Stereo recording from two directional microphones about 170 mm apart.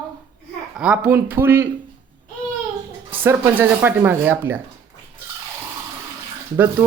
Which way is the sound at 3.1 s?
10° right (ahead or behind).